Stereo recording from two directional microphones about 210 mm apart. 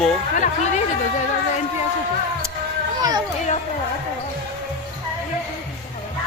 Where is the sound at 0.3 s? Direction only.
35° left (ahead or behind).